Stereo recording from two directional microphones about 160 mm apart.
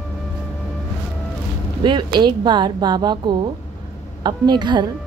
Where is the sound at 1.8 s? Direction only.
30° right (ahead or behind).